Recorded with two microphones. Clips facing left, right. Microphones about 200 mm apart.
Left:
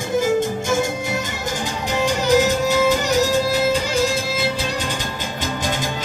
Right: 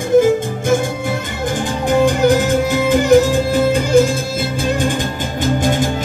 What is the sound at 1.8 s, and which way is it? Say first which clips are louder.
Music: right 8 dB; 55° right (ahead or behind).